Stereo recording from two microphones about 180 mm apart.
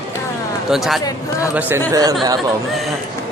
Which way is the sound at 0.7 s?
Centre (ahead or behind).